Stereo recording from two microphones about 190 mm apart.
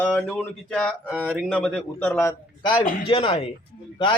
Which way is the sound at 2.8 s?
45° left (ahead or behind).